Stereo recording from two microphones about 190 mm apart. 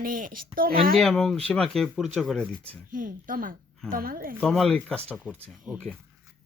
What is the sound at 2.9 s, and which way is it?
Speech, 45° right (ahead or behind).